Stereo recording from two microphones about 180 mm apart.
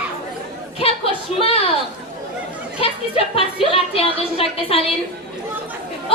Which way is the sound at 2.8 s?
35° left (ahead or behind).